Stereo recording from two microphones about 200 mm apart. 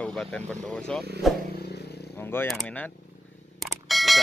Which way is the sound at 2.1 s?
10° left (ahead or behind).